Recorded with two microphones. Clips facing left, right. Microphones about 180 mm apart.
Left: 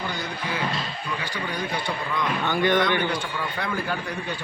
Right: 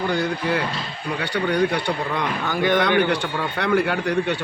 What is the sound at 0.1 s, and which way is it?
A man's voice, 65° right (ahead or behind).